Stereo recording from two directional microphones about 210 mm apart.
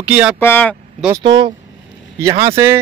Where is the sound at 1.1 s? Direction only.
20° right (ahead or behind).